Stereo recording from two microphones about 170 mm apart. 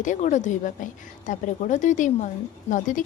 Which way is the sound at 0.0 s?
45° left (ahead or behind).